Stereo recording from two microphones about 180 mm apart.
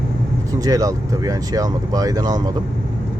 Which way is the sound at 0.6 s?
20° right (ahead or behind).